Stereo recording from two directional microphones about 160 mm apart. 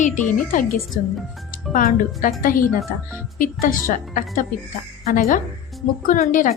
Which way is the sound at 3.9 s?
55° left (ahead or behind).